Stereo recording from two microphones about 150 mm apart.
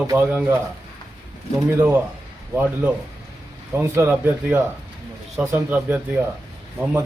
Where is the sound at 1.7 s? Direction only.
10° right (ahead or behind).